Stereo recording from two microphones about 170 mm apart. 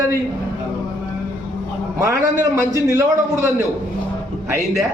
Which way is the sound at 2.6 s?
15° right (ahead or behind).